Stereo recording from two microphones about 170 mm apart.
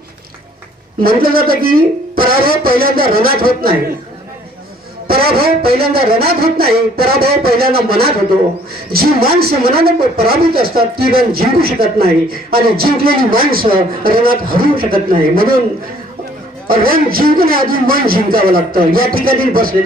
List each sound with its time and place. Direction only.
1.0 s a man's voice: 60° right (ahead or behind)
5.0 s a sound: 65° right (ahead or behind)
5.7 s a man's voice: 65° right (ahead or behind)
16.6 s a man's voice: 60° right (ahead or behind)